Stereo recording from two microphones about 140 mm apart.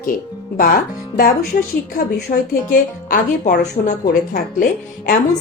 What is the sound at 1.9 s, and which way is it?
A woman's voice, 85° left.